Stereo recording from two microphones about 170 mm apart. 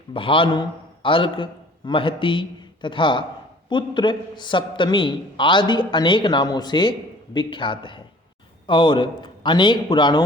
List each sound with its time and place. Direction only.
0.1 s a man's voice: 30° left (ahead or behind)